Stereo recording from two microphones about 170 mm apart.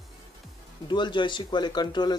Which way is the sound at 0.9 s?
25° left (ahead or behind).